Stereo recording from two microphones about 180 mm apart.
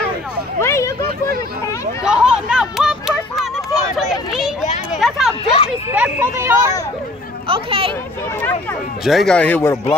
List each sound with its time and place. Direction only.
0.6 s speech: 15° left (ahead or behind)
2.0 s chatter: 5° right (ahead or behind)
3.9 s a sound: centre (ahead or behind)
5.4 s a sound: 35° left (ahead or behind)
5.9 s speech: 10° right (ahead or behind)
7.4 s speech: 30° right (ahead or behind)
9.0 s speech: centre (ahead or behind)